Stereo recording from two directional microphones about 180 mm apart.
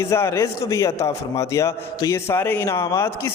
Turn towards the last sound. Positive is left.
turn(degrees=15)  # may be behind; listen again after turning